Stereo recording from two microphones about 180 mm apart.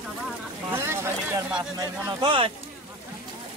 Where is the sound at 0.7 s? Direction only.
15° right (ahead or behind).